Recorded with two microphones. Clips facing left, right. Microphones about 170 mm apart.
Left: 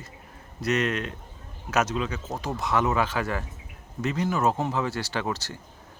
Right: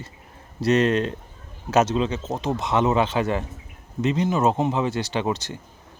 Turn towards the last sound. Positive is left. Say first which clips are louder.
# right 5 dB
turn(degrees=-20)  # may be behind; listen again after turning